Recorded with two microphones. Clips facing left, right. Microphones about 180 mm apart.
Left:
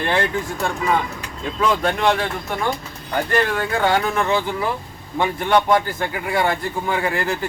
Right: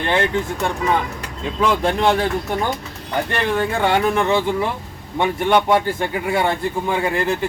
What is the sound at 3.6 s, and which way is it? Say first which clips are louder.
Speech: right 1 dB; 20° right (ahead or behind).